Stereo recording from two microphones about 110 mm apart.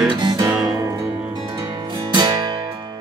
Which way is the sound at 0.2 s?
40° right (ahead or behind).